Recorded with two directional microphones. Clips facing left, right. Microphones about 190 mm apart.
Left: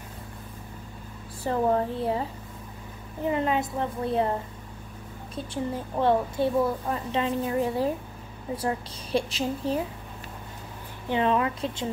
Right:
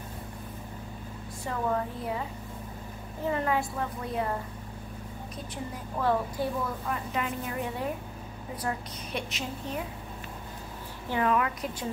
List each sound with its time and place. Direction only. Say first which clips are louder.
1.4 s a woman's voice: left 6 dB; 35° left (ahead or behind)
3.3 s a woman's voice: left 3 dB; 20° left (ahead or behind)
5.3 s a woman's voice: left 9 dB; 30° left (ahead or behind)
11.1 s a woman's voice: left 3 dB; 25° left (ahead or behind)